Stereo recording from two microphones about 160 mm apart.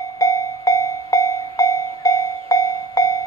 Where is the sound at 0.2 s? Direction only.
20° left (ahead or behind).